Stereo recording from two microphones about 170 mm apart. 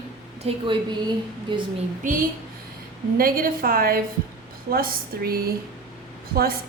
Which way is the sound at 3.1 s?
60° right (ahead or behind).